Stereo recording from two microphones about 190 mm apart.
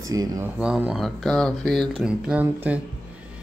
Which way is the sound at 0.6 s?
5° right (ahead or behind).